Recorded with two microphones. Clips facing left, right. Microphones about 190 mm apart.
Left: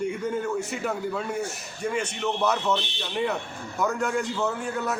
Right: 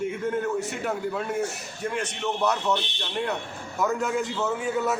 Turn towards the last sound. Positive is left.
turn(degrees=0)  # may be behind; listen again after turning